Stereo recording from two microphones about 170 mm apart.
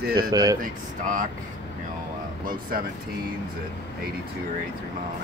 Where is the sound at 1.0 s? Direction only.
50° right (ahead or behind).